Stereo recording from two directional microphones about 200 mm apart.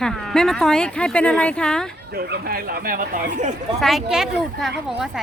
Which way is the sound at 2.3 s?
50° right (ahead or behind).